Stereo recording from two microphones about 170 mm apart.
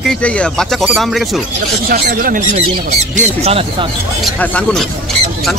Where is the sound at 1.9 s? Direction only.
55° right (ahead or behind); by 3.9 s 35° right (ahead or behind).